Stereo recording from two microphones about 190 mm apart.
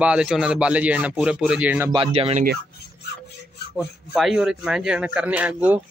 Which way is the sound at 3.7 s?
Centre (ahead or behind).